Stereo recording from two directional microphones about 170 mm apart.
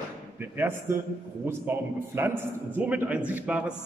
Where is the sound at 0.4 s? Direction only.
15° right (ahead or behind).